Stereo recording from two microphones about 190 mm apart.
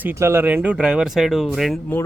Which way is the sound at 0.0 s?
15° right (ahead or behind).